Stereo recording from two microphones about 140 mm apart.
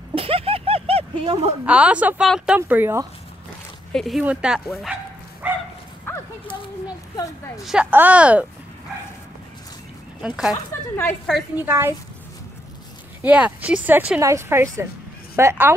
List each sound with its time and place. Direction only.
0.1 s a sound: 45° right (ahead or behind)
1.7 s speech: 10° right (ahead or behind)
3.9 s speech: centre (ahead or behind)
5.4 s bow-wow: 10° right (ahead or behind)
7.2 s a woman's voice: 20° left (ahead or behind)
7.6 s speech: 10° right (ahead or behind)
10.2 s speech: 5° right (ahead or behind)
10.5 s speech: 15° left (ahead or behind)
11.5 s speech: 15° right (ahead or behind)
13.2 s a woman's voice: 10° right (ahead or behind)